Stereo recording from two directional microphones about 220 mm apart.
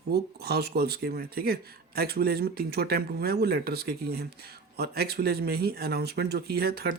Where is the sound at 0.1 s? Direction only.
45° right (ahead or behind).